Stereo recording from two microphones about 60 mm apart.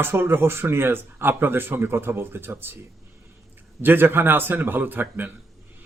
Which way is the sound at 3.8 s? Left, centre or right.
Right.